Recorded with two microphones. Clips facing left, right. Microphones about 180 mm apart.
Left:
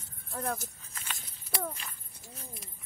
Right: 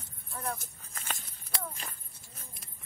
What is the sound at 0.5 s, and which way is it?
Horse, 45° right (ahead or behind).